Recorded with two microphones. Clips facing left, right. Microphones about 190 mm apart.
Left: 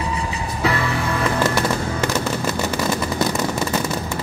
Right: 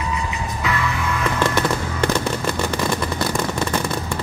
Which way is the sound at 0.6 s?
35° left (ahead or behind).